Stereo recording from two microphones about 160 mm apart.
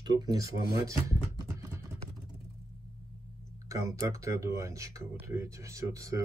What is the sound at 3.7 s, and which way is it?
Speech, 20° right (ahead or behind).